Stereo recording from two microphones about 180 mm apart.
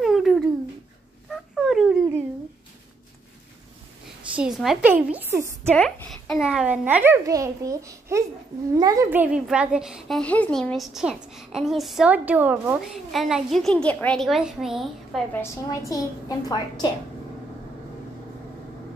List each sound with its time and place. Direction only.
0.0 s a sound: centre (ahead or behind)
4.4 s a woman's voice: centre (ahead or behind)
5.7 s a child's voice: 5° left (ahead or behind)
15.4 s a woman's voice: 15° left (ahead or behind)